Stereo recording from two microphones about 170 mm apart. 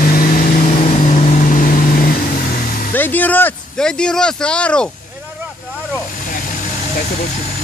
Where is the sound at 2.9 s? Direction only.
10° left (ahead or behind).